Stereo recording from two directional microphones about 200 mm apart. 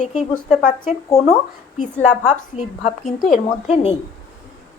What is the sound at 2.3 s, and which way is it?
A woman's voice, 40° left (ahead or behind).